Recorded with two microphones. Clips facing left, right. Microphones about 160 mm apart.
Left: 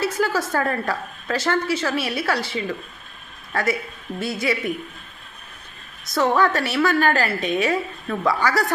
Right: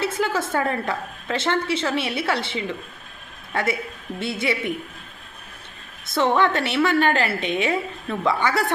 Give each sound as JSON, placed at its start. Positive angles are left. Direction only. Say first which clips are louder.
{"t": 0.0, "sound": "a woman's voice", "louder": "left 1 dB", "side_deg": -25}
{"t": 6.1, "sound": "a woman's voice", "louder": "even", "side_deg": -25}